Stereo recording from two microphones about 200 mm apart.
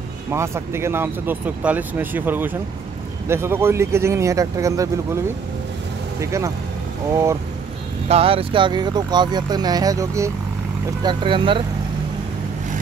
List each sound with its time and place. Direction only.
0.3 s speech: 15° right (ahead or behind)
7.1 s speech: 15° right (ahead or behind)
8.1 s speech: 30° right (ahead or behind)